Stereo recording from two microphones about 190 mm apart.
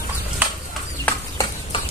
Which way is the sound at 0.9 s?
15° left (ahead or behind).